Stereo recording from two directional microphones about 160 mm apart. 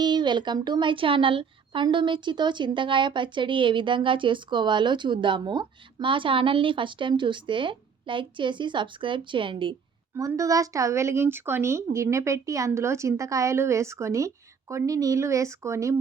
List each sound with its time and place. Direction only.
0.0 s a woman's voice: 30° right (ahead or behind)
10.2 s a woman's voice: 20° right (ahead or behind)